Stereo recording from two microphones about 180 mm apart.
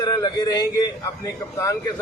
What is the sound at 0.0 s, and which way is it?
A man's voice, 25° left (ahead or behind).